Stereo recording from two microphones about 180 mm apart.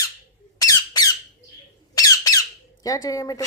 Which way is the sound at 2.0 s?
20° left (ahead or behind).